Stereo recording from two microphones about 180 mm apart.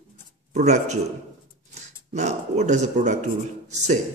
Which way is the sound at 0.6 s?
40° right (ahead or behind).